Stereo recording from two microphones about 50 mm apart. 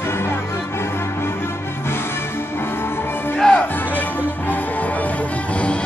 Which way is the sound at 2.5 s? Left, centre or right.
Left.